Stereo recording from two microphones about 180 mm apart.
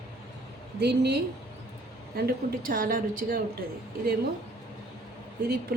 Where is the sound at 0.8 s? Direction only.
65° right (ahead or behind).